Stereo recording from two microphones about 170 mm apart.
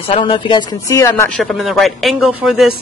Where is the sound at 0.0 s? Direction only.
30° left (ahead or behind).